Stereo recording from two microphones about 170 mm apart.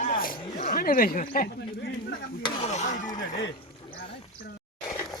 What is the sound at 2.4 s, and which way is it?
Speech, 25° left (ahead or behind).